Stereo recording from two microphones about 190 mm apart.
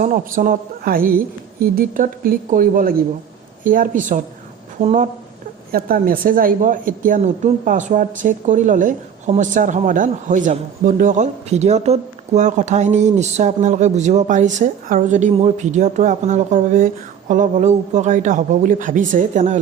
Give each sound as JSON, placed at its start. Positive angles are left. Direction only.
{"t": 0.0, "sound": "a woman's voice", "side_deg": -45}
{"t": 5.7, "sound": "speech", "side_deg": -50}